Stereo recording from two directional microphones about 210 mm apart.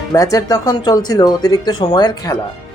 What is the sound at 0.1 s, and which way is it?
Speech, 15° left (ahead or behind).